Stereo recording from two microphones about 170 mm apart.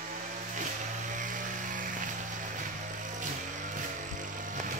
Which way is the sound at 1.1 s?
50° right (ahead or behind).